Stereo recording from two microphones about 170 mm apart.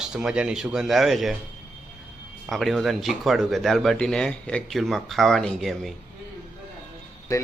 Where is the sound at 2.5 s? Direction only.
Centre (ahead or behind).